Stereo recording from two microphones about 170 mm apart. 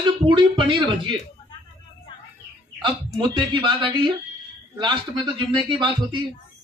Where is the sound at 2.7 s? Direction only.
25° right (ahead or behind).